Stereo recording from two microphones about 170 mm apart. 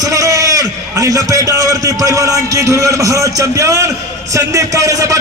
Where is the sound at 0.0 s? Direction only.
20° right (ahead or behind).